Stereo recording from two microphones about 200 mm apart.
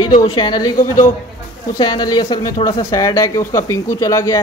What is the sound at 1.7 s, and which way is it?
Speech, 20° left (ahead or behind).